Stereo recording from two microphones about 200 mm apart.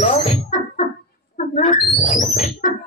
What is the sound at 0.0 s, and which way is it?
Music, 30° left (ahead or behind).